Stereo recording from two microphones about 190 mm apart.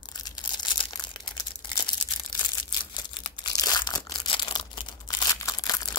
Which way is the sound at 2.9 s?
25° left (ahead or behind).